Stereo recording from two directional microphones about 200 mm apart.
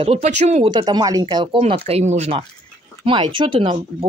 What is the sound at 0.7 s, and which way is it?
Speech, 20° right (ahead or behind).